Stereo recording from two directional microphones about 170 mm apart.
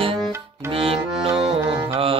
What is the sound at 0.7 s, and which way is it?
Music, 30° right (ahead or behind).